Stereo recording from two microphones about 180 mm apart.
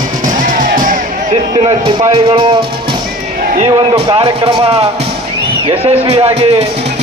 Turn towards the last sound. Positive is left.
turn(degrees=-30)  # may be behind; listen again after turning